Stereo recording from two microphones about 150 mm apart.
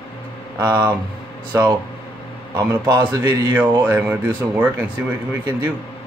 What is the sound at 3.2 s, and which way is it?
Speech, 10° right (ahead or behind).